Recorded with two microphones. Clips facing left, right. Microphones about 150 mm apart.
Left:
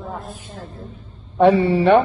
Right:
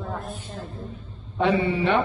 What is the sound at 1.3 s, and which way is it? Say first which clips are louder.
Speech: left 8 dB; 45° left (ahead or behind).